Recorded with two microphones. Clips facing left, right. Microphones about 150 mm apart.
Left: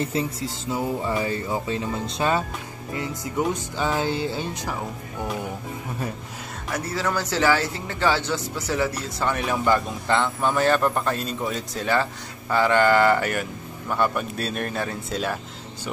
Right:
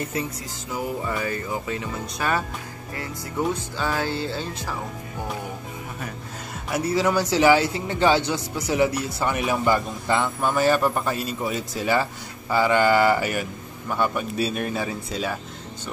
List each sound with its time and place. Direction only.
0.0 s music: 30° left (ahead or behind)
2.9 s speech: 20° left (ahead or behind)
6.7 s a man's voice: 15° right (ahead or behind)